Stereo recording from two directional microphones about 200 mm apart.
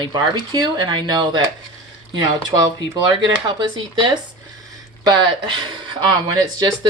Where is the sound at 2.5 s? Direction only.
20° right (ahead or behind).